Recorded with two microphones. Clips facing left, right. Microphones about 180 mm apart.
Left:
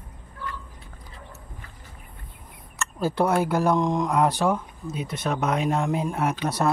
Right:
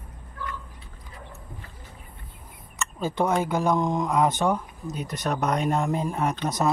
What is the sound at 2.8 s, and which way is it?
Speech, 5° left (ahead or behind).